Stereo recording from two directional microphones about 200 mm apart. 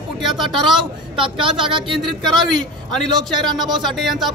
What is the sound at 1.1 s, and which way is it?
Speech, 25° right (ahead or behind).